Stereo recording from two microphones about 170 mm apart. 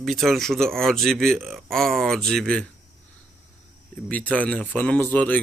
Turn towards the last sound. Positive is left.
turn(degrees=10)  # may be behind; listen again after turning